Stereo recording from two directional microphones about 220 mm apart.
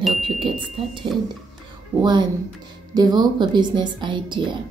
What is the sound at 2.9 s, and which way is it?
A woman's voice, 20° right (ahead or behind).